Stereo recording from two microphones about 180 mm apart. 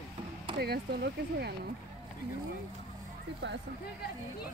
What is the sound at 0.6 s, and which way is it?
Speech, 65° right (ahead or behind).